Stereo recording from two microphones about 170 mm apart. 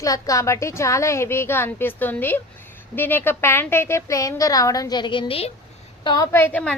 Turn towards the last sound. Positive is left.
turn(degrees=10)  # may be behind; listen again after turning